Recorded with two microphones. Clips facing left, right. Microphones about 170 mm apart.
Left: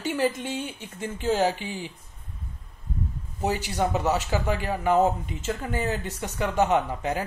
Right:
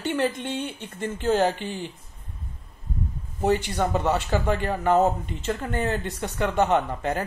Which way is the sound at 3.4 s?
10° left (ahead or behind).